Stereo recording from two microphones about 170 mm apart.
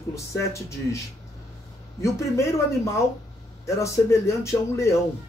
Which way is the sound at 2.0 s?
15° left (ahead or behind).